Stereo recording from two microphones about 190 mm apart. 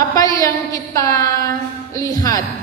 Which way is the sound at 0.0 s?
15° left (ahead or behind).